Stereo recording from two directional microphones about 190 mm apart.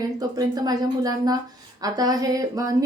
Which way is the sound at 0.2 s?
20° right (ahead or behind).